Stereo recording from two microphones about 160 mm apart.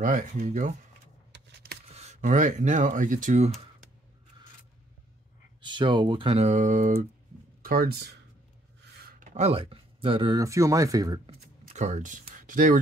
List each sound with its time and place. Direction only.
0.0 s speech: 55° right (ahead or behind)
1.3 s a sound: 90° right
1.9 s speech: 45° right (ahead or behind)
5.6 s speech: 30° right (ahead or behind); by 7.1 s 50° right (ahead or behind)
7.6 s speech: 70° right (ahead or behind)
9.0 s a sound: 50° right (ahead or behind); by 10.4 s 30° right (ahead or behind)
10.4 s speech: 20° right (ahead or behind)
11.7 s speech: 45° right (ahead or behind)